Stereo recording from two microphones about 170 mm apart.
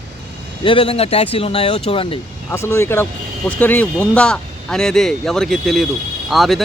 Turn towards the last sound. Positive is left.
turn(degrees=0)  # may be behind; listen again after turning